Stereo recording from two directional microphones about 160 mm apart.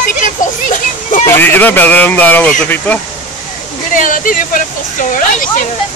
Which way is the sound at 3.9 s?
55° left (ahead or behind).